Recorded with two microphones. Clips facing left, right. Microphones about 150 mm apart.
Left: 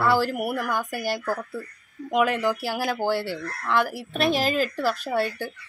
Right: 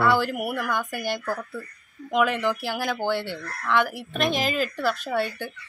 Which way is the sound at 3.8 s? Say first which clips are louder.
Left 1 dB; 35° left (ahead or behind).